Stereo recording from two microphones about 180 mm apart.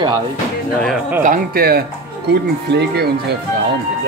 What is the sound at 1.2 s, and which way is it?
Speech, 55° right (ahead or behind).